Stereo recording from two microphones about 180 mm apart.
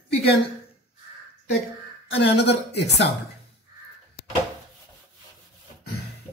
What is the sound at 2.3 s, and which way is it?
Speech, 65° left (ahead or behind).